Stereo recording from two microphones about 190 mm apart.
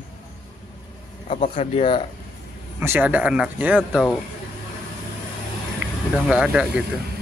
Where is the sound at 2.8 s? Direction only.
10° right (ahead or behind).